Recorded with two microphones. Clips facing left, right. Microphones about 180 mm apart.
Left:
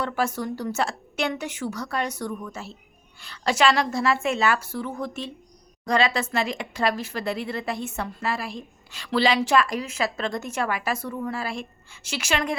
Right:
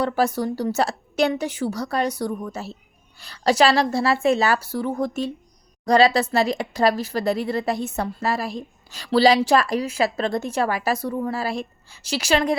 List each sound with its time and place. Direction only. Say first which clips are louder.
0.0 s speech: right 5 dB; 35° right (ahead or behind)